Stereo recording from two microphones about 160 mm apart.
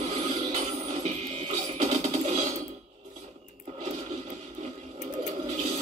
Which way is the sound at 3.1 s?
40° right (ahead or behind).